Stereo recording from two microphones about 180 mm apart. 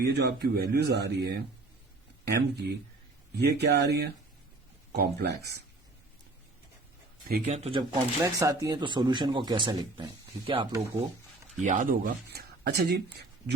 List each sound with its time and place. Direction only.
0.0 s speech: 65° right (ahead or behind)
7.4 s speech: 35° right (ahead or behind)
7.8 s speech: 20° right (ahead or behind)
11.6 s speech: 45° right (ahead or behind); by 13.2 s 60° right (ahead or behind)